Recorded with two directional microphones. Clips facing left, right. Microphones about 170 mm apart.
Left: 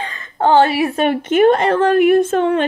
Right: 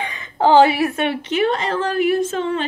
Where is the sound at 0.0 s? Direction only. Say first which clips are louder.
Even; 15° right (ahead or behind).